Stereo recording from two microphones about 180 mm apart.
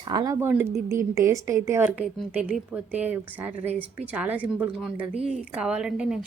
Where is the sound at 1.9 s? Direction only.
Centre (ahead or behind).